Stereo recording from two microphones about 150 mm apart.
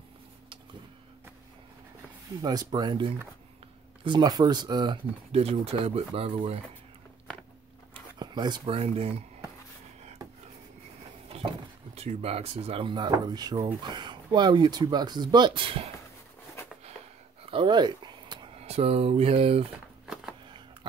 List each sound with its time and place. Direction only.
2.4 s speech: 30° right (ahead or behind)
5.3 s speech: 45° right (ahead or behind)
7.9 s a sound: 30° right (ahead or behind)
11.3 s speech: 40° right (ahead or behind)
16.6 s sniff: 15° left (ahead or behind)
17.5 s a sound: 35° right (ahead or behind)
18.6 s speech: 40° right (ahead or behind)